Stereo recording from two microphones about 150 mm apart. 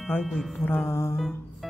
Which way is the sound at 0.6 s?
15° left (ahead or behind).